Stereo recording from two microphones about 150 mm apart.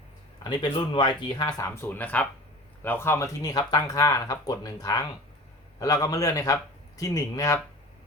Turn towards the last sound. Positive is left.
turn(degrees=25)  # may be behind; listen again after turning